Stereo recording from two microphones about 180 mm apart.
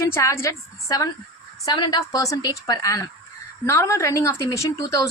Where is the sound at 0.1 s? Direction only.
15° left (ahead or behind).